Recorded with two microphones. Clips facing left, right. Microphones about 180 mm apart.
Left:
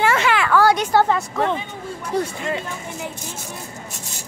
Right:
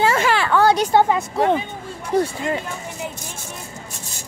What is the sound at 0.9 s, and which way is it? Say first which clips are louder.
Speech: right 1 dB; 15° right (ahead or behind).